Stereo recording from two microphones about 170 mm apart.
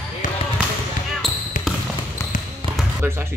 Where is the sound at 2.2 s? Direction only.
15° left (ahead or behind).